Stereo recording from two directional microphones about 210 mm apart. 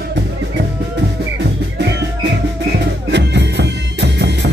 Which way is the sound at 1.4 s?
55° right (ahead or behind).